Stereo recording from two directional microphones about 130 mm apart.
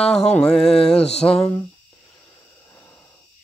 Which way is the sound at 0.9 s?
50° left (ahead or behind).